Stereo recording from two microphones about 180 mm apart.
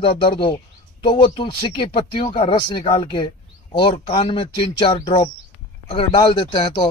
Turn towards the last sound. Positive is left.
turn(degrees=25)  # may be behind; listen again after turning